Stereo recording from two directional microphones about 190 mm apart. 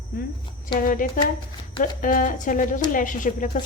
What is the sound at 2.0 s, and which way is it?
Speech, 45° left (ahead or behind).